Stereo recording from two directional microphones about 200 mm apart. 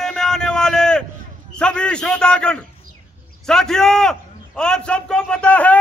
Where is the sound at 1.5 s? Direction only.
5° left (ahead or behind).